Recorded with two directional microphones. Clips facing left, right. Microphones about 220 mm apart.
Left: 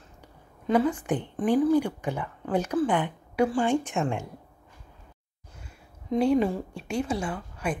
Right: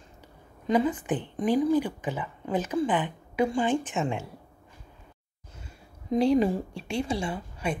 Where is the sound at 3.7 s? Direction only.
10° left (ahead or behind).